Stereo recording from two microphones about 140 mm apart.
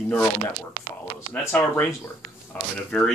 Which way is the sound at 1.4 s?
20° left (ahead or behind).